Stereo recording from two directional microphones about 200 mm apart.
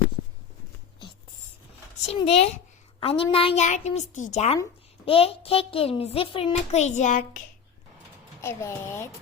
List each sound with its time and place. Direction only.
2.1 s a child's voice: 30° left (ahead or behind)
8.4 s speech: 15° left (ahead or behind)